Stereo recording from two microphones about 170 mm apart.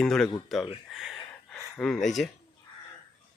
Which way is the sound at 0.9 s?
Centre (ahead or behind).